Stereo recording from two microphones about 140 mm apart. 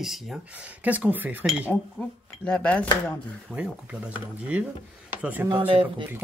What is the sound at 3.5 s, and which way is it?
Speech, 10° right (ahead or behind).